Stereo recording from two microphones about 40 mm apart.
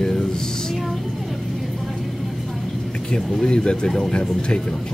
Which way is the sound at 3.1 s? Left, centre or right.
Left.